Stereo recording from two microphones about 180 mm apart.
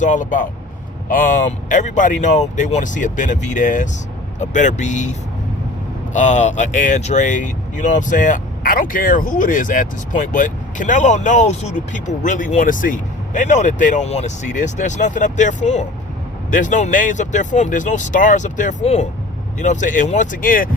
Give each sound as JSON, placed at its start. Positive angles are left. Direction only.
{"t": 0.0, "sound": "speech", "side_deg": 45}
{"t": 6.1, "sound": "speech", "side_deg": 40}